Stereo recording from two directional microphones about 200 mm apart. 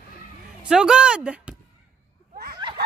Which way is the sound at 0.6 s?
5° right (ahead or behind).